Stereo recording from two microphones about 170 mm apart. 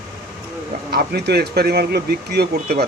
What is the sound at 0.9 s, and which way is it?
Speech, 70° right (ahead or behind).